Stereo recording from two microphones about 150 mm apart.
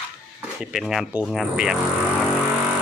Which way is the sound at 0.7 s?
Centre (ahead or behind).